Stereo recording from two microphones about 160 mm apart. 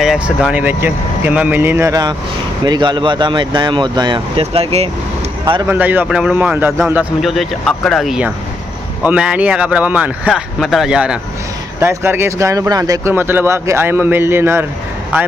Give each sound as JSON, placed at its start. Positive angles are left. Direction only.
{"t": 0.0, "sound": "speech", "side_deg": -5}
{"t": 4.4, "sound": "speech", "side_deg": -40}
{"t": 5.4, "sound": "speech", "side_deg": -25}
{"t": 5.8, "sound": "speech", "side_deg": -10}
{"t": 7.2, "sound": "speech", "side_deg": 0}
{"t": 11.8, "sound": "speech", "side_deg": -15}